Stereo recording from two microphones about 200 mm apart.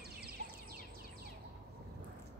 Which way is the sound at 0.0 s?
50° right (ahead or behind).